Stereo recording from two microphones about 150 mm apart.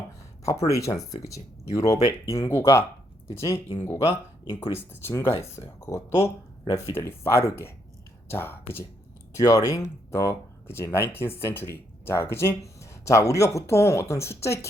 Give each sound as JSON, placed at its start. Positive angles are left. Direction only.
{"t": 0.7, "sound": "speech", "side_deg": 20}
{"t": 4.4, "sound": "speech", "side_deg": 35}
{"t": 4.8, "sound": "speech", "side_deg": 15}